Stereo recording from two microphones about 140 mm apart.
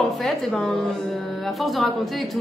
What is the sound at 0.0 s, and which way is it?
A woman's voice, centre (ahead or behind).